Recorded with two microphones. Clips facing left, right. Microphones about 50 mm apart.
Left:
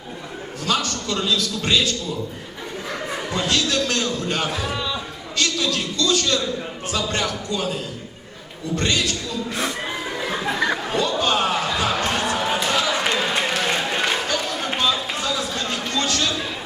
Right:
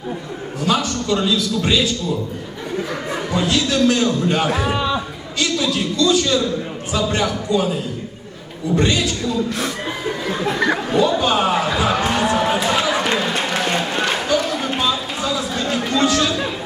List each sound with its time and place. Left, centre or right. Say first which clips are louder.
0.6 s a man's voice: right 4 dB; centre
3.3 s a man's voice: right 4 dB; centre
4.7 s a sound: right 6 dB; right
5.4 s a man's voice: right 3 dB; centre
10.2 s chuckle: right 3 dB; centre
10.7 s a sound: right 5 dB; centre